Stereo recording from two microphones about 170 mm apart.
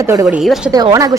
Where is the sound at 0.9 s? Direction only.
20° right (ahead or behind).